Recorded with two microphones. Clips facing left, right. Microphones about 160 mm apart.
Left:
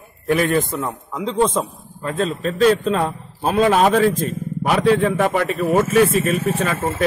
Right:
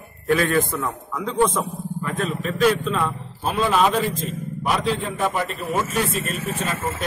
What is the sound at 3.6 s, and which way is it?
Speech, 50° left (ahead or behind).